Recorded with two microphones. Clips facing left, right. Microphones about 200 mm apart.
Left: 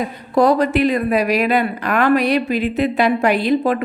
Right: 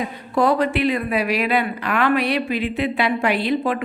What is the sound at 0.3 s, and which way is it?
Speech, 40° left (ahead or behind).